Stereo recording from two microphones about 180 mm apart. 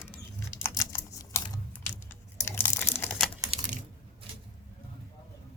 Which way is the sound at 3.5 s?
45° right (ahead or behind).